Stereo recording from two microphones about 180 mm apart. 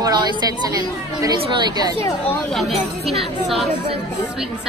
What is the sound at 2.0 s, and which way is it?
Speech, 15° left (ahead or behind).